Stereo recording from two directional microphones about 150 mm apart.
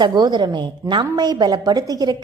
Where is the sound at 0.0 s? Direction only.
30° right (ahead or behind).